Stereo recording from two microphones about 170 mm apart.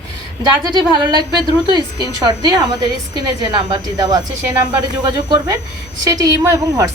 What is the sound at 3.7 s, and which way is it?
Speech, 25° right (ahead or behind).